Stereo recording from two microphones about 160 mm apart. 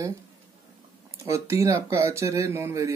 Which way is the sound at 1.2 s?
20° right (ahead or behind).